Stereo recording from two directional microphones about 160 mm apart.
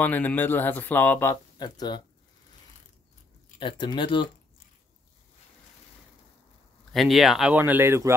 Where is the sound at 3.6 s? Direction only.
30° left (ahead or behind).